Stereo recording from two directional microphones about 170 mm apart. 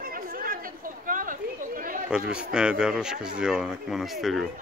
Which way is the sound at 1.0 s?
50° right (ahead or behind).